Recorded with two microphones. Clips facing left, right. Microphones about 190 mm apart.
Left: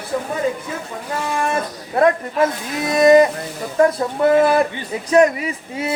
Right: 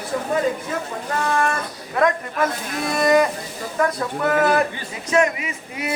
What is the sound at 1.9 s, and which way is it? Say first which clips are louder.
Speech: left 4 dB; 30° left (ahead or behind).